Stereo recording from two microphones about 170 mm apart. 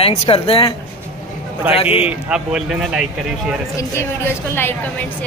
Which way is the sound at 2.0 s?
5° right (ahead or behind).